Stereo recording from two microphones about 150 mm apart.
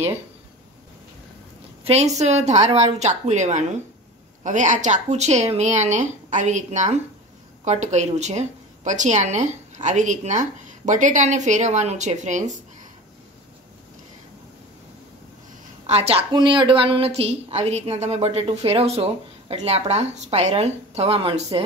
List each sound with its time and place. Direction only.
1.9 s speech: 45° right (ahead or behind)
15.9 s speech: 45° right (ahead or behind)
16.3 s speech: 30° right (ahead or behind)